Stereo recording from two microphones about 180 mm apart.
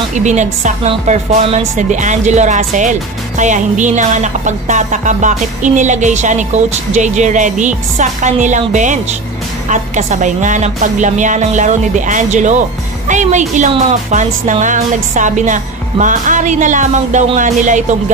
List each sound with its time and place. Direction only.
0.2 s speech: 40° right (ahead or behind)